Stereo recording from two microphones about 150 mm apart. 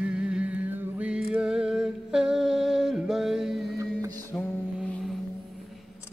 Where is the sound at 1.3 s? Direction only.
5° right (ahead or behind).